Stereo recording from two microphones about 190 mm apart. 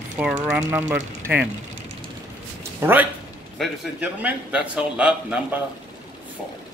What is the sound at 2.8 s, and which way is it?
A man's voice, 10° right (ahead or behind).